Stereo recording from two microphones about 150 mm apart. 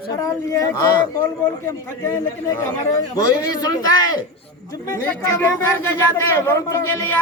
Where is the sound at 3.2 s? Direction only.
25° left (ahead or behind).